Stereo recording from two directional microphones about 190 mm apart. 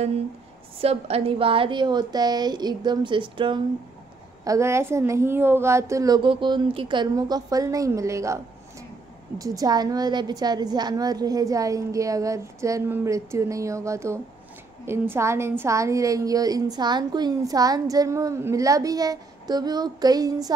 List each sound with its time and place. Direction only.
0.7 s a woman's voice: 30° right (ahead or behind)
4.5 s a woman's voice: 15° right (ahead or behind)
9.4 s a woman's voice: 20° right (ahead or behind)